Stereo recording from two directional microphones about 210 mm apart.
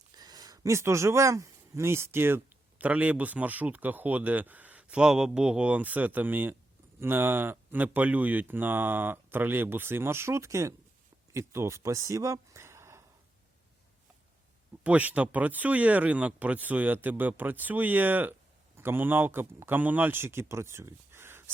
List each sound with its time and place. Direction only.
0.2 s speech: 20° right (ahead or behind)
14.8 s speech: 5° right (ahead or behind)